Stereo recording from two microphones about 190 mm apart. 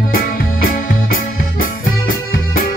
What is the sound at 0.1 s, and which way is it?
Music, 50° left (ahead or behind).